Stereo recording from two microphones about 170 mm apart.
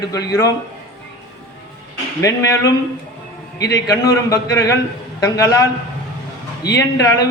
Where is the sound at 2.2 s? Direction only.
20° left (ahead or behind).